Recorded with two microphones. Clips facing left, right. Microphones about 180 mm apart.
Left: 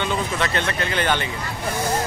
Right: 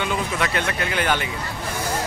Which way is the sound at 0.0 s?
5° right (ahead or behind).